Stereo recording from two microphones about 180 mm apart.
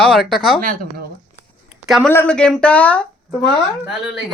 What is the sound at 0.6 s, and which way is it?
Speech, 50° right (ahead or behind).